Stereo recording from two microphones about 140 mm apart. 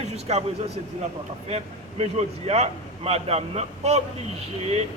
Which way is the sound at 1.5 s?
50° right (ahead or behind).